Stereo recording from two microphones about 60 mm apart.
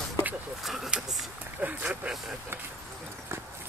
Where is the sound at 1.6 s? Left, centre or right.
Right.